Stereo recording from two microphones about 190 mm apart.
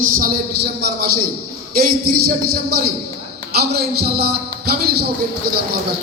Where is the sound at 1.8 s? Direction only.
55° right (ahead or behind).